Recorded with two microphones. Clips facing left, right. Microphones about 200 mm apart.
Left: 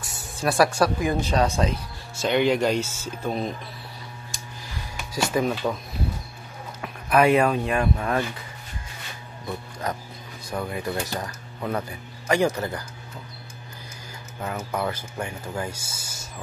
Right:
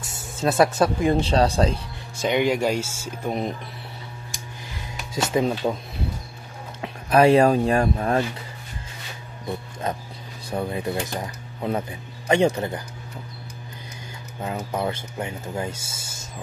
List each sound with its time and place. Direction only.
0.0 s music: 20° right (ahead or behind)
0.7 s speech: 25° right (ahead or behind)
2.1 s speech: 10° right (ahead or behind)
5.1 s speech: 25° right (ahead or behind)
6.8 s speech: 35° right (ahead or behind)
9.8 s speech: 25° right (ahead or behind)
14.7 s speech: 25° right (ahead or behind)